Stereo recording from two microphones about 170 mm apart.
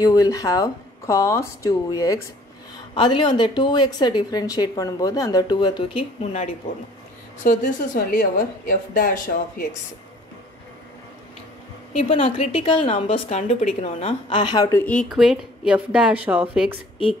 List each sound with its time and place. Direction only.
0.0 s a woman's voice: 20° left (ahead or behind)
7.4 s a woman's voice: 50° left (ahead or behind)
11.9 s a woman's voice: 35° left (ahead or behind); by 16.7 s 5° right (ahead or behind)